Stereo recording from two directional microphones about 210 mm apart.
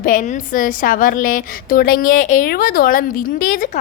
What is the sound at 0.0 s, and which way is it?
A woman's voice, 40° left (ahead or behind).